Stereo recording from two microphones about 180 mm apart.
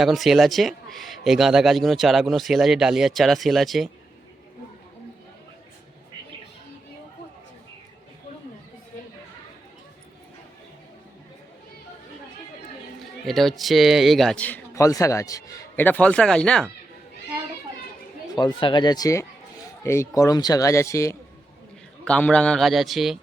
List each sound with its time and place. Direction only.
0.0 s a man's voice: centre (ahead or behind)
13.2 s a man's voice: centre (ahead or behind)
18.3 s a man's voice: 25° left (ahead or behind)
22.0 s a man's voice: 5° left (ahead or behind)